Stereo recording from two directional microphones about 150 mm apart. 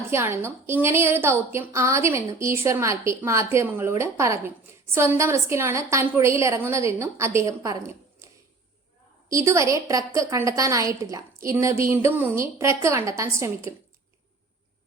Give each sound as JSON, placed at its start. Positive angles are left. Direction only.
{"t": 0.1, "sound": "a woman's voice", "side_deg": -15}
{"t": 9.3, "sound": "a woman's voice", "side_deg": -20}